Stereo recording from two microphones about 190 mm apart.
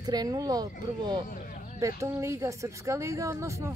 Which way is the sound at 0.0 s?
20° right (ahead or behind).